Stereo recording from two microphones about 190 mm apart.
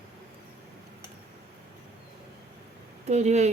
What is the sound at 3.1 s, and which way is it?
Speech, 35° right (ahead or behind).